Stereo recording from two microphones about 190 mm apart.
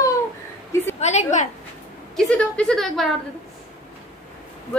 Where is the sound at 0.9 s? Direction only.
35° left (ahead or behind).